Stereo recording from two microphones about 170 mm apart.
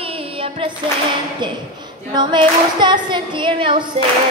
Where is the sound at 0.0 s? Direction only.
35° right (ahead or behind).